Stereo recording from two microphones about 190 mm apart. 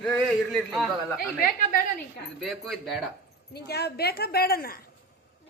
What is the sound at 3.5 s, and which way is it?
A woman's voice, 60° left (ahead or behind).